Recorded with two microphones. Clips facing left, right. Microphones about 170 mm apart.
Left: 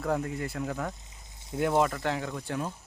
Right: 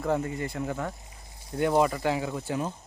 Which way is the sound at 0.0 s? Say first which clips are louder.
Right 2 dB; centre (ahead or behind).